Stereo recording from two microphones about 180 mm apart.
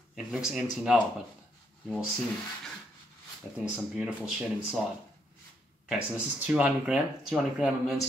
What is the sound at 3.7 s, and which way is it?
Speech, 5° right (ahead or behind).